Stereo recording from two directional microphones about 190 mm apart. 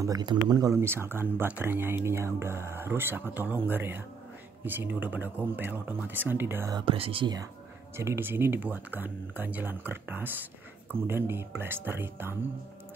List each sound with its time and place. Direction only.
0.0 s speech: 20° right (ahead or behind)
6.8 s speech: 30° right (ahead or behind)
8.0 s speech: 15° right (ahead or behind)